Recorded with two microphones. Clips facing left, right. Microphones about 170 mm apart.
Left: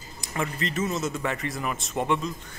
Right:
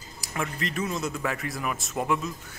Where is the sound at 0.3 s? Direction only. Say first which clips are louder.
Left 2 dB; centre (ahead or behind).